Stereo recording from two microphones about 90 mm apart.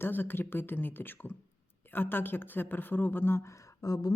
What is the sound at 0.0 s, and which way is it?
Speech, 25° left (ahead or behind).